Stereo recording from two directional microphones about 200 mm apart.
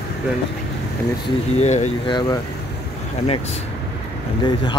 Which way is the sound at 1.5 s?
35° left (ahead or behind).